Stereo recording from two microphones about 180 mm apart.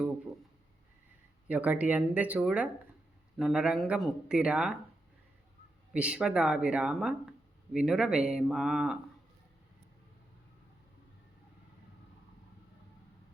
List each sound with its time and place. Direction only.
1.5 s speech: 10° right (ahead or behind)
5.9 s speech: 5° right (ahead or behind)